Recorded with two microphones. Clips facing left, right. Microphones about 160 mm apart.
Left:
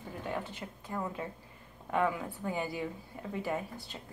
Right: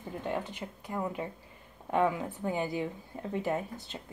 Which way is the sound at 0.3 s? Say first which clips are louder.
Right 3 dB; 15° right (ahead or behind).